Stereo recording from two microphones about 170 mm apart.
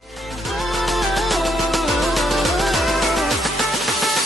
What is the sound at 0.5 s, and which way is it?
Music, centre (ahead or behind).